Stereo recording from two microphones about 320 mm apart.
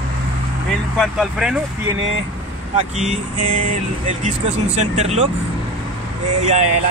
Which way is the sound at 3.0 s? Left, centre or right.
Right.